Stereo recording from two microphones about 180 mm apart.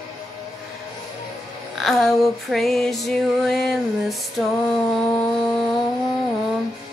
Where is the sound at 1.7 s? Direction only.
Centre (ahead or behind).